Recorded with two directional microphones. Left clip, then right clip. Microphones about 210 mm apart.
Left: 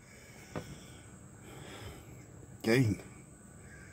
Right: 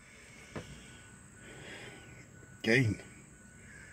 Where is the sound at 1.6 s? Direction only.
Centre (ahead or behind).